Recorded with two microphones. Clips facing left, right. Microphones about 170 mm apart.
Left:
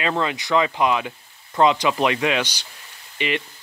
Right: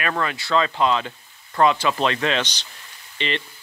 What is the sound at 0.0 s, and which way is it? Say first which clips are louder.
Speech: left 2 dB; 20° left (ahead or behind).